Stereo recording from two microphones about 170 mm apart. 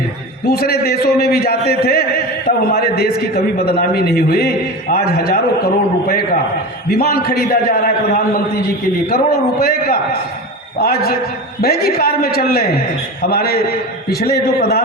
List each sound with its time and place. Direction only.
0.4 s a man's voice: 65° left (ahead or behind)